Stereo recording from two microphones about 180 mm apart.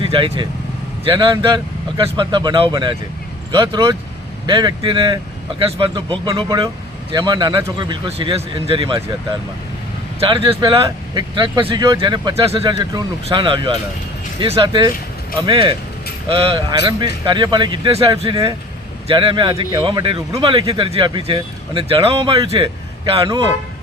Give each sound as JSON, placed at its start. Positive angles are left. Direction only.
{"t": 0.0, "sound": "speech", "side_deg": -30}
{"t": 10.2, "sound": "a man's voice", "side_deg": -30}